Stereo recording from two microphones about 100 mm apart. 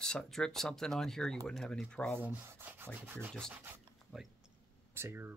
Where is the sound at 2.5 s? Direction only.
20° right (ahead or behind).